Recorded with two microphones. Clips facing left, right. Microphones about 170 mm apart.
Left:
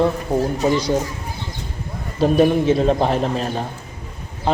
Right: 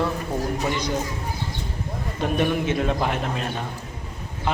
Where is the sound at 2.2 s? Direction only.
35° left (ahead or behind).